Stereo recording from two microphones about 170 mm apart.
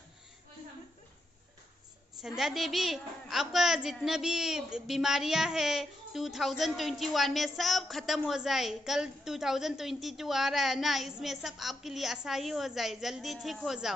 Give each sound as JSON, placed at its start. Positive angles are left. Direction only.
{"t": 2.2, "sound": "a woman's voice", "side_deg": 0}